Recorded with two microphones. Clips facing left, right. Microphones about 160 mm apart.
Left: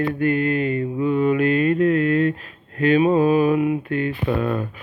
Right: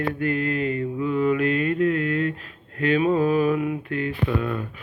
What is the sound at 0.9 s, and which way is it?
Mantra, 25° left (ahead or behind).